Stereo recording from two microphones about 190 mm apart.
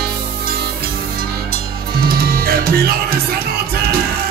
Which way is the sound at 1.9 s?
55° right (ahead or behind).